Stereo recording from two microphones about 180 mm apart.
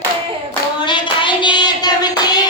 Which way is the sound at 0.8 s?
25° left (ahead or behind).